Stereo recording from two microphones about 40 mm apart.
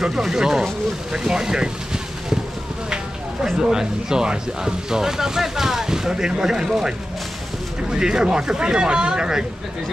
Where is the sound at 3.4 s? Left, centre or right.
Centre.